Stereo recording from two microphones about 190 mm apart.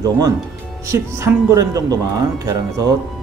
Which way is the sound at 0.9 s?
15° right (ahead or behind).